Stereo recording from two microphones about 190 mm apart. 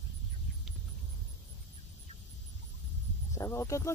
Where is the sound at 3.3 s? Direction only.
15° left (ahead or behind).